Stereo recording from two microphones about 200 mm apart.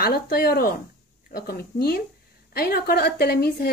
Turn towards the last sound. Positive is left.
turn(degrees=50)  # may be behind; listen again after turning